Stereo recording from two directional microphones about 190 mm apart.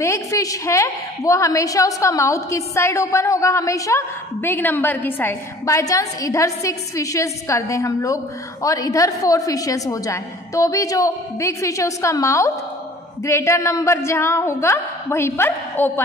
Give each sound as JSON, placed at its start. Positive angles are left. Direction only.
{"t": 0.0, "sound": "a woman's voice", "side_deg": 15}